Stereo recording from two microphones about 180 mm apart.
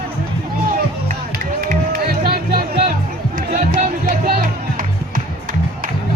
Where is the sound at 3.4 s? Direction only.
45° right (ahead or behind).